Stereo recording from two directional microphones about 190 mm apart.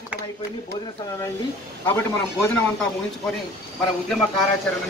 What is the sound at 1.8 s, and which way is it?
Speech, 10° left (ahead or behind).